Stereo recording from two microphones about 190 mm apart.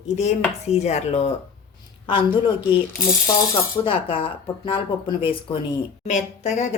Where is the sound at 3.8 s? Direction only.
30° left (ahead or behind).